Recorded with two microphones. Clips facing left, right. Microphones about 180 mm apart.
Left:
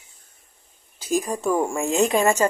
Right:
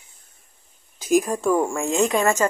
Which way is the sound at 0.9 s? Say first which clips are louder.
Right 5 dB; 15° right (ahead or behind).